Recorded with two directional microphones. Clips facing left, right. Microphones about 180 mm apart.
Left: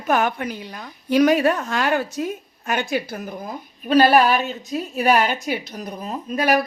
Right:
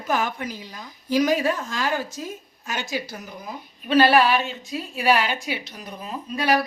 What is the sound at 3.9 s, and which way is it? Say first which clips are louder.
A woman's voice: left 2 dB; 45° left (ahead or behind).